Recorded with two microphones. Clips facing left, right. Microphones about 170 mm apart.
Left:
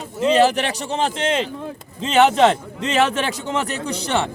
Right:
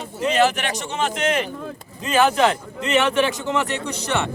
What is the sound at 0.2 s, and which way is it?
A man's voice, 30° left (ahead or behind).